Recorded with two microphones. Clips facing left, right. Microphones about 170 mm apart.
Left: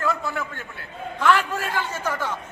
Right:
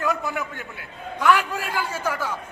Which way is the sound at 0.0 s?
15° right (ahead or behind).